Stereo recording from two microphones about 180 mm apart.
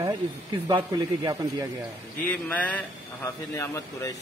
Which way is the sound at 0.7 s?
15° right (ahead or behind).